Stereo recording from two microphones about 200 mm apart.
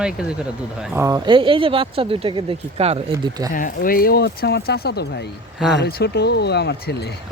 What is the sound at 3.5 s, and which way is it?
Speech, 45° left (ahead or behind).